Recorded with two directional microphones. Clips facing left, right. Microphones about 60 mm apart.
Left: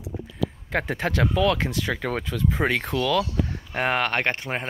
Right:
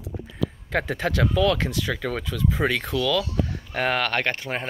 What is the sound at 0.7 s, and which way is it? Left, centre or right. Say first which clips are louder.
Speech: right 1 dB; left.